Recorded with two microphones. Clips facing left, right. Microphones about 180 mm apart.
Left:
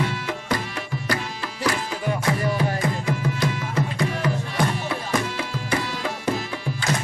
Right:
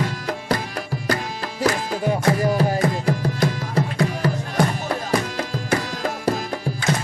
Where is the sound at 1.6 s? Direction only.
40° right (ahead or behind).